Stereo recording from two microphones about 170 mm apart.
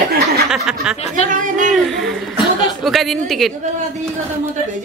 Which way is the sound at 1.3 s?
50° right (ahead or behind).